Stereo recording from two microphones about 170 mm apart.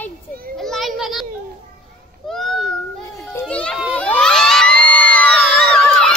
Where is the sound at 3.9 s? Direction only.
5° left (ahead or behind).